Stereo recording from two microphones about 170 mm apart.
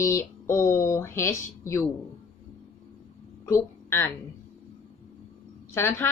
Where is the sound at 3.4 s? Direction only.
15° left (ahead or behind).